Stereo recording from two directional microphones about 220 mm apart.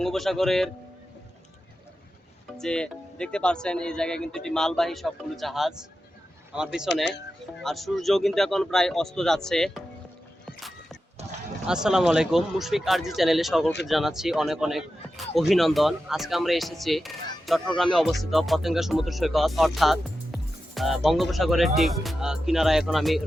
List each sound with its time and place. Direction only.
0.0 s speech: centre (ahead or behind)
2.5 s speech: 5° left (ahead or behind)
11.2 s a sound: 30° right (ahead or behind)
11.6 s speech: 5° right (ahead or behind)